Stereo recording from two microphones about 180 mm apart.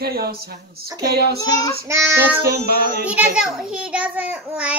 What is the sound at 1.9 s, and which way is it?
A child's voice, 10° right (ahead or behind).